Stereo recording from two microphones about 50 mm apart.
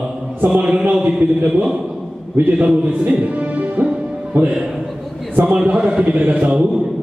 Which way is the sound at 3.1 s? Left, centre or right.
Right.